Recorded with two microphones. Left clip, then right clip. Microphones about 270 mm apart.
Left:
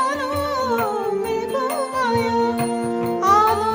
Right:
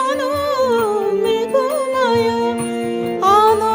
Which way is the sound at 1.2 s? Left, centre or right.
Right.